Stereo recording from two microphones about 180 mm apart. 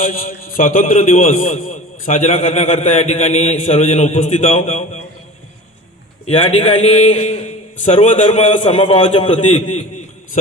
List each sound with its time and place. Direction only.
0.0 s a man's voice: 50° left (ahead or behind)
6.2 s a man's voice: 35° left (ahead or behind)